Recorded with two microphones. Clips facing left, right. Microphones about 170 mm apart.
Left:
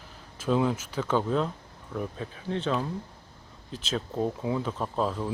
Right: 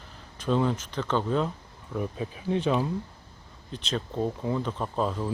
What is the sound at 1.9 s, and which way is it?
Speech, 10° right (ahead or behind).